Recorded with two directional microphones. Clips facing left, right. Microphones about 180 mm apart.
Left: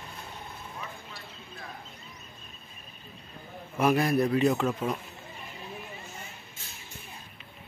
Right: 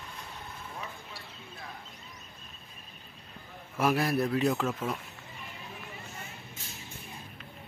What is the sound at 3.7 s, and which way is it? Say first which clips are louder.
A man's voice: left 3 dB; centre (ahead or behind).